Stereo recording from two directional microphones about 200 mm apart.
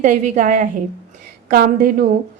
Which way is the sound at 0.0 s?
40° right (ahead or behind).